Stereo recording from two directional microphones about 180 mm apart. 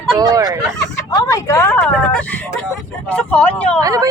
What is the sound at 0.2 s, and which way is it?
Speech, 20° right (ahead or behind).